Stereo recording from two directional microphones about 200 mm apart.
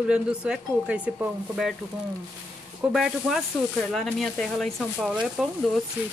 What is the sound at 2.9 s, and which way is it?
Speech, centre (ahead or behind).